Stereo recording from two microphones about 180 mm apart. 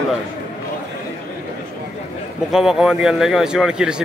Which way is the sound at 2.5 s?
5° right (ahead or behind).